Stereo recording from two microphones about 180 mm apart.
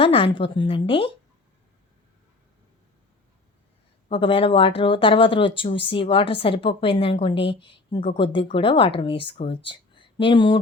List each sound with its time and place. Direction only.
0.0 s speech: 30° left (ahead or behind)
4.1 s speech: 30° left (ahead or behind)